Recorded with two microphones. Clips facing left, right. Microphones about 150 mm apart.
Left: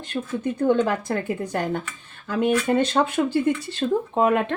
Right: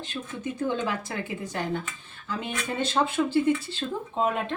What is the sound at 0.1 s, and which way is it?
Speech, 55° left (ahead or behind).